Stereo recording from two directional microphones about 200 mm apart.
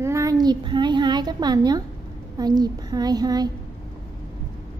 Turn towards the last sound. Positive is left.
turn(degrees=-20)  # may be behind; listen again after turning